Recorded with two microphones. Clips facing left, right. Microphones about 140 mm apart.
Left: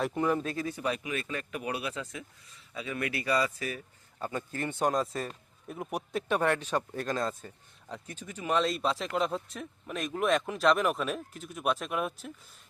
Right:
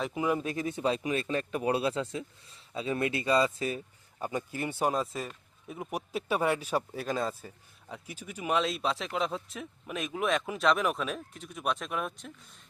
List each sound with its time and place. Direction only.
0.0 s speech: 5° right (ahead or behind); by 3.8 s 25° right (ahead or behind)
4.2 s speech: 15° right (ahead or behind); by 12.3 s 5° left (ahead or behind)